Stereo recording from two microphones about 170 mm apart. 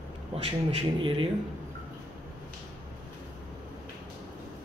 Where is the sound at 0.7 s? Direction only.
30° right (ahead or behind).